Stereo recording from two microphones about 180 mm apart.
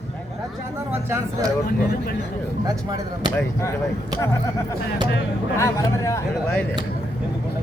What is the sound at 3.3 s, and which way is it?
Speech, 10° left (ahead or behind).